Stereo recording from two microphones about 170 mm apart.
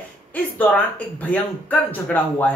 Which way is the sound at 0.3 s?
10° left (ahead or behind).